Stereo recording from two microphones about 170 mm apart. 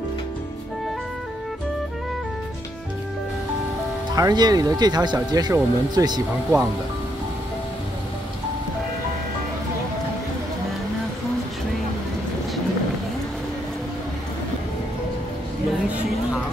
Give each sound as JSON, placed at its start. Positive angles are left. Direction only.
{"t": 4.1, "sound": "speech", "side_deg": -25}